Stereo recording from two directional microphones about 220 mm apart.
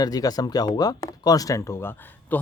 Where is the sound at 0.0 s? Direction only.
15° left (ahead or behind).